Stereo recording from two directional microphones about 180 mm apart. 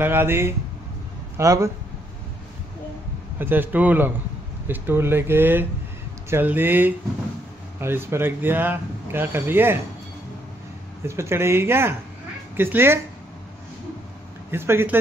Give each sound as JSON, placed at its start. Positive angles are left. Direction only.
{"t": 0.0, "sound": "speech", "side_deg": -10}
{"t": 3.3, "sound": "speech", "side_deg": -10}
{"t": 11.1, "sound": "speech", "side_deg": -15}
{"t": 14.5, "sound": "speech", "side_deg": -15}